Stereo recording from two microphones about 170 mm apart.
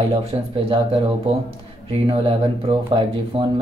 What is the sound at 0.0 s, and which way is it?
Speech, 35° right (ahead or behind).